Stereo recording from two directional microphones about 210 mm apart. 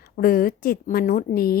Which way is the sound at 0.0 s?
45° left (ahead or behind).